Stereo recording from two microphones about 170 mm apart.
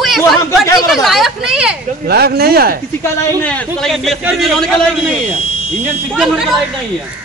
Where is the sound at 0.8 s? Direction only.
Centre (ahead or behind).